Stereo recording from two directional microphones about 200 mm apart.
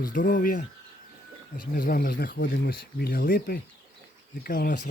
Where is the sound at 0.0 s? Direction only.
45° left (ahead or behind).